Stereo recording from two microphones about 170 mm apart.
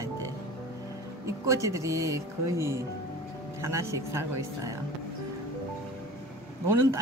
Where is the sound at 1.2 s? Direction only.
15° right (ahead or behind).